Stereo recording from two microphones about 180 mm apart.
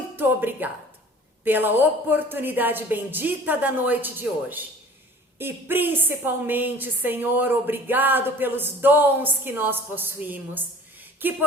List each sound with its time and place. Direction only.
0.2 s a woman's voice: 10° right (ahead or behind)